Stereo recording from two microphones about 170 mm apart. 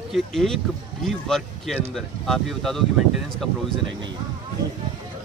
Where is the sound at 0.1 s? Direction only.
Centre (ahead or behind).